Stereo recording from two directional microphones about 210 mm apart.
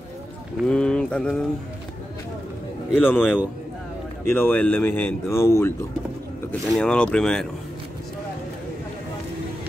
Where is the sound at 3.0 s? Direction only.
5° left (ahead or behind).